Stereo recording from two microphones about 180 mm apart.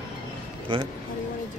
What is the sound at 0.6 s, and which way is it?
Speech, 25° right (ahead or behind).